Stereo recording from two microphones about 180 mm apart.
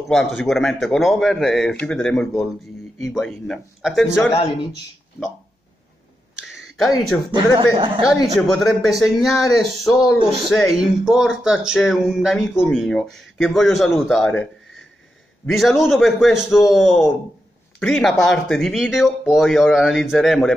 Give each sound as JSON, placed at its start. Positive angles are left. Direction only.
{"t": 0.1, "sound": "speech", "side_deg": 0}
{"t": 6.3, "sound": "a sound", "side_deg": 0}
{"t": 7.3, "sound": "speech", "side_deg": -30}
{"t": 8.4, "sound": "speech", "side_deg": 0}